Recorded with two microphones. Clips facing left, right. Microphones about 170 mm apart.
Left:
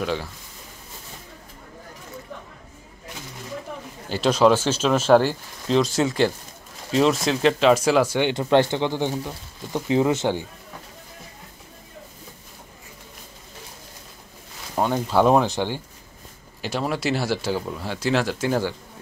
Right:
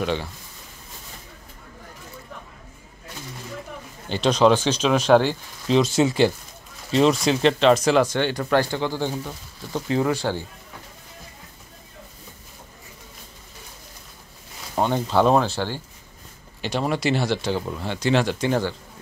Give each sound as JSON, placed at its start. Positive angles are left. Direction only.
{"t": 0.0, "sound": "speech", "side_deg": 0}
{"t": 4.1, "sound": "speech", "side_deg": 5}
{"t": 8.3, "sound": "speech", "side_deg": 20}
{"t": 15.0, "sound": "speech", "side_deg": 10}
{"t": 16.6, "sound": "speech", "side_deg": 5}